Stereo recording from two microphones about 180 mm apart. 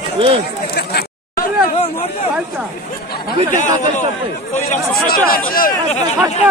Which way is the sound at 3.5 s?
45° left (ahead or behind).